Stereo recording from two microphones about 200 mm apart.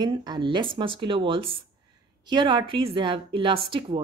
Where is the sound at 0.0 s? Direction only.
20° right (ahead or behind).